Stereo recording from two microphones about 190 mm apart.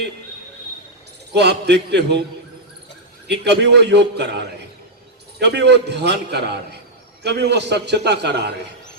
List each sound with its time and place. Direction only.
1.3 s a man's voice: 60° right (ahead or behind)
3.2 s a man's voice: 60° right (ahead or behind)